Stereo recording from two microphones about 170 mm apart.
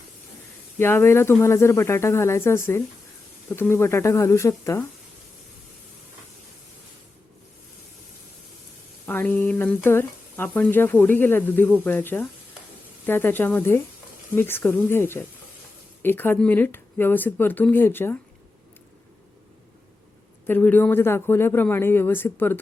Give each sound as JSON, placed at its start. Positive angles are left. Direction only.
{"t": 0.8, "sound": "speech", "side_deg": 15}
{"t": 9.0, "sound": "speech", "side_deg": 10}
{"t": 20.5, "sound": "speech", "side_deg": 10}